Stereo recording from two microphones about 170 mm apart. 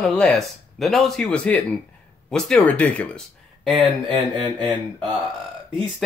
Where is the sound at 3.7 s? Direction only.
25° right (ahead or behind).